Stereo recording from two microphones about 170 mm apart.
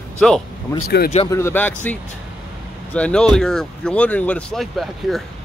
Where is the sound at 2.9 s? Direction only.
5° left (ahead or behind).